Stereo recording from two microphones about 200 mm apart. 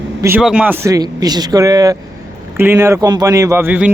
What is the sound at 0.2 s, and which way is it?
A man's voice, 10° right (ahead or behind).